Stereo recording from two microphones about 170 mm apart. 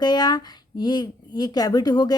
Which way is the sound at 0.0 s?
25° left (ahead or behind).